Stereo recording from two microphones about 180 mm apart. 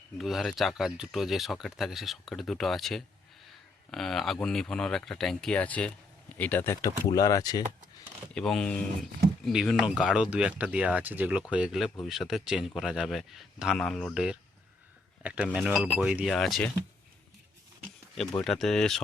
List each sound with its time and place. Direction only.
0.2 s speech: centre (ahead or behind); by 7.6 s 20° left (ahead or behind)
8.4 s speech: 5° left (ahead or behind)
18.1 s speech: centre (ahead or behind)